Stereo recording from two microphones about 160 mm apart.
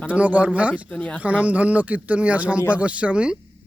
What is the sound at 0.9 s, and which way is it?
Speech, 5° left (ahead or behind).